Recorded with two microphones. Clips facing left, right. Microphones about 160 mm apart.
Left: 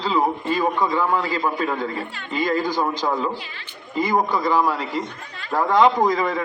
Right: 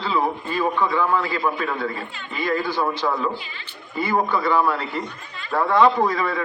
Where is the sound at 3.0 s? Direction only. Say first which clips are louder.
Even; 25° left (ahead or behind).